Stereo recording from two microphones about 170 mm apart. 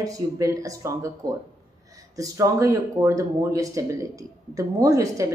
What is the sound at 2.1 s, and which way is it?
A woman's voice, 20° right (ahead or behind).